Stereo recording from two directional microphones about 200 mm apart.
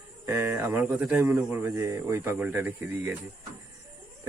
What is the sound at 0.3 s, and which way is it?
Speech, 15° right (ahead or behind).